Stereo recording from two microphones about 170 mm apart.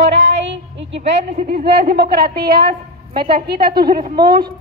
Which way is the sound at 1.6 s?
70° right (ahead or behind).